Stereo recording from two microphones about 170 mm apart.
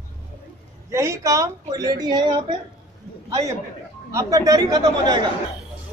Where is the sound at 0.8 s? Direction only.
15° right (ahead or behind).